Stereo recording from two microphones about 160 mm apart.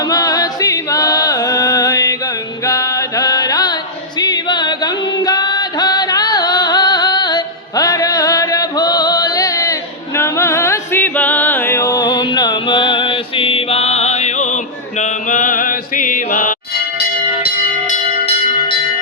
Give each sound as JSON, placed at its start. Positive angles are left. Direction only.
{"t": 0.1, "sound": "chant", "side_deg": 25}
{"t": 2.6, "sound": "mantra", "side_deg": 20}
{"t": 4.2, "sound": "music", "side_deg": 25}